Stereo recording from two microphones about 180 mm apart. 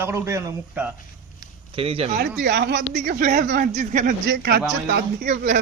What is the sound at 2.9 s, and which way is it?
Speech, 45° right (ahead or behind).